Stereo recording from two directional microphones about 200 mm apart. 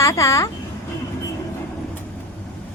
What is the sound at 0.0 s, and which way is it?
Speech, 15° left (ahead or behind).